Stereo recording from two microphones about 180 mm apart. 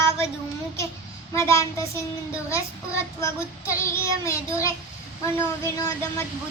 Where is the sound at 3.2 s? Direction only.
15° left (ahead or behind).